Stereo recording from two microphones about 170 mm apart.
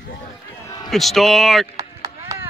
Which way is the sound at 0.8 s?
Centre (ahead or behind).